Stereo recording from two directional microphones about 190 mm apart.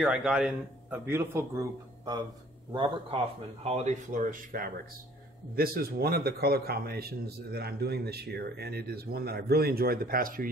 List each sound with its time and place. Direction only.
0.0 s a man's voice: 5° right (ahead or behind); by 10.5 s 50° right (ahead or behind)